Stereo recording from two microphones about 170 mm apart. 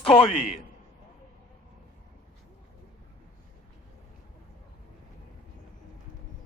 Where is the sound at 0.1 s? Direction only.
35° left (ahead or behind).